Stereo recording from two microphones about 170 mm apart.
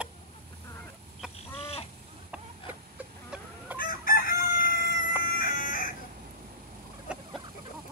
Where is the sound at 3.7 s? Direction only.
55° left (ahead or behind).